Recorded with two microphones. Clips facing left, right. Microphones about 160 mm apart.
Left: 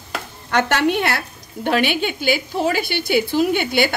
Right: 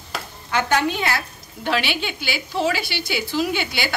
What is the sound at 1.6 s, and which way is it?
A woman's voice, 50° left (ahead or behind).